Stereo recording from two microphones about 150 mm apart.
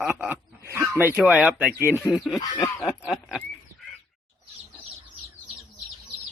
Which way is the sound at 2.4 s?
25° left (ahead or behind).